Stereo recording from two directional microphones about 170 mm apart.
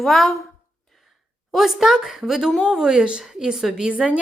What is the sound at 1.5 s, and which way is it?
A woman's voice, centre (ahead or behind).